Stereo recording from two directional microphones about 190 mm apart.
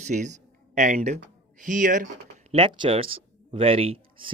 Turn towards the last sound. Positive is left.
turn(degrees=-25)  # may be behind; listen again after turning